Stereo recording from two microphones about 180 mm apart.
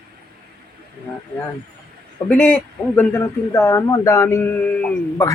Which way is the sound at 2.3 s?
10° left (ahead or behind).